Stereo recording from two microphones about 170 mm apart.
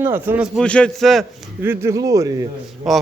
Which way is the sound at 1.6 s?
15° right (ahead or behind).